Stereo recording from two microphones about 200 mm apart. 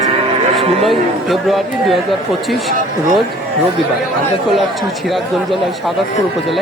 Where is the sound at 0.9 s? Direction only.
Centre (ahead or behind).